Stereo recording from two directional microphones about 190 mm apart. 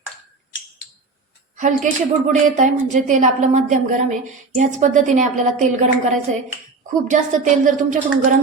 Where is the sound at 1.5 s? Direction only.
40° right (ahead or behind).